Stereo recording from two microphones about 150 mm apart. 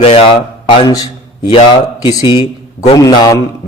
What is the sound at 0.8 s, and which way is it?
Speech, 25° left (ahead or behind).